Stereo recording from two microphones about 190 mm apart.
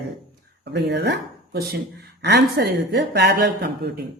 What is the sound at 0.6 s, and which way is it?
Speech, 65° right (ahead or behind).